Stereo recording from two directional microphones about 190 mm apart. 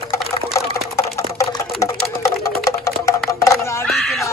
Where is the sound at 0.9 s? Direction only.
15° left (ahead or behind).